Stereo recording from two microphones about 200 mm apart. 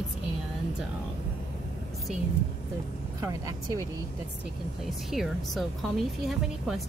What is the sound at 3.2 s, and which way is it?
Speech, 15° right (ahead or behind).